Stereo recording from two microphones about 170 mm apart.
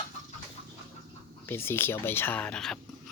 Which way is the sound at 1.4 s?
15° left (ahead or behind).